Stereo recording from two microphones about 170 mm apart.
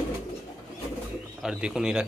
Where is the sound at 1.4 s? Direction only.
5° right (ahead or behind).